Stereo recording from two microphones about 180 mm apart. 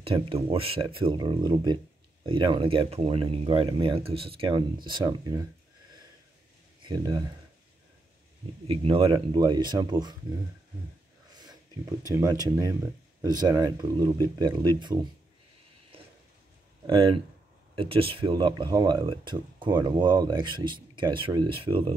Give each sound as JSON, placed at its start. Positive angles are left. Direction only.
{"t": 0.0, "sound": "speech", "side_deg": -30}
{"t": 6.8, "sound": "speech", "side_deg": -25}
{"t": 8.6, "sound": "speech", "side_deg": -30}
{"t": 11.3, "sound": "speech", "side_deg": -20}
{"t": 16.8, "sound": "speech", "side_deg": -30}